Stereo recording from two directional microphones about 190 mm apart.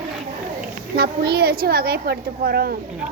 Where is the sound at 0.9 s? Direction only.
55° right (ahead or behind).